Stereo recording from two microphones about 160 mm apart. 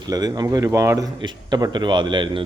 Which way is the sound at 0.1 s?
25° right (ahead or behind).